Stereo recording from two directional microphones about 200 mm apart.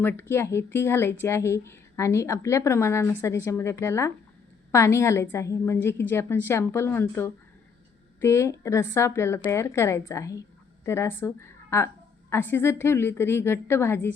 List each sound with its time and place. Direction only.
0.0 s a woman's voice: 10° left (ahead or behind)